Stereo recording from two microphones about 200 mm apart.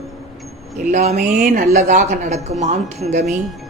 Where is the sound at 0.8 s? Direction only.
35° right (ahead or behind).